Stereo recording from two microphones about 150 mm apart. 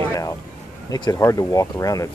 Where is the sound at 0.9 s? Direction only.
20° left (ahead or behind).